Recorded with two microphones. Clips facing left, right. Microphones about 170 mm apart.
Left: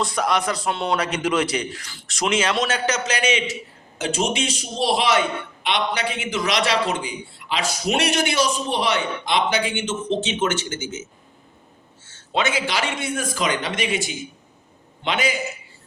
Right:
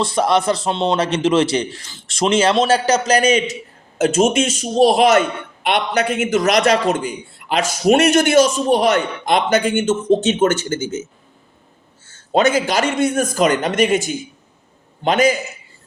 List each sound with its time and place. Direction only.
0.0 s a man's voice: 30° right (ahead or behind)
12.3 s a man's voice: 45° right (ahead or behind)